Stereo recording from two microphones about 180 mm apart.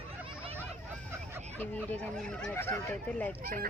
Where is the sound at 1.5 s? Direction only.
10° left (ahead or behind).